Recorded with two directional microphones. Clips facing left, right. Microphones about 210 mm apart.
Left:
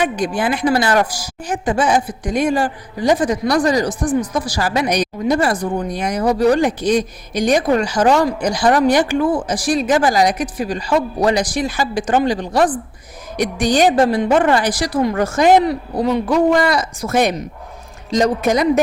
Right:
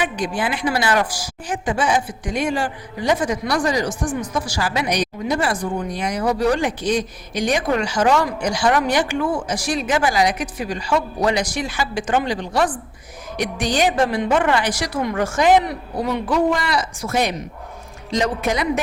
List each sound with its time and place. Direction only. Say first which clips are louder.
0.0 s a woman's voice: left 4 dB; 45° left (ahead or behind)